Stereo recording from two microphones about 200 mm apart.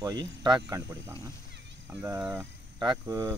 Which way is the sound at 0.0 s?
20° right (ahead or behind).